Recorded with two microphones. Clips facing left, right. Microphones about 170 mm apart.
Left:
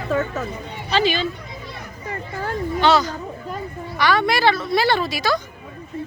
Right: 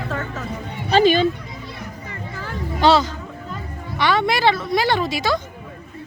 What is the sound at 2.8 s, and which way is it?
A woman's voice, 30° right (ahead or behind).